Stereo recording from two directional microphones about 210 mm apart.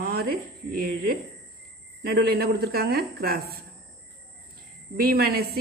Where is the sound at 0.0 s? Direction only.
45° right (ahead or behind).